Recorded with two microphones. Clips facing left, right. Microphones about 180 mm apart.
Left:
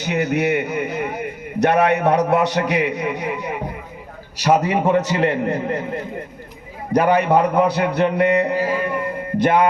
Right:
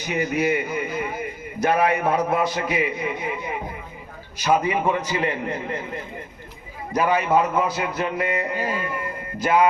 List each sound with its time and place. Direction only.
0.0 s a man's voice: 70° left (ahead or behind)
4.7 s a man's voice: 40° left (ahead or behind)
4.9 s a man's voice: 75° left (ahead or behind)
5.3 s a man's voice: 40° left (ahead or behind)
6.9 s music: 65° left (ahead or behind)